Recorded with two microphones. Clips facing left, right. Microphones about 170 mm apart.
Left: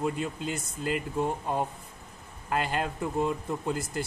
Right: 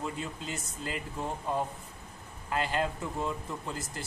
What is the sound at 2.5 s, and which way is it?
Speech, 55° left (ahead or behind).